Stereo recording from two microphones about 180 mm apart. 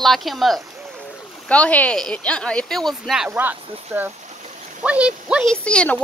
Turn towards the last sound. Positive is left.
turn(degrees=5)  # may be behind; listen again after turning